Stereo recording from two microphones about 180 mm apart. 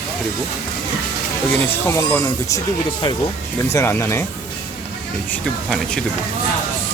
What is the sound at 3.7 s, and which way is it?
Speech, 15° left (ahead or behind).